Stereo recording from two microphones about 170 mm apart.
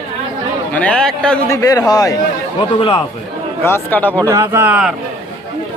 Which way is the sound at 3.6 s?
10° left (ahead or behind).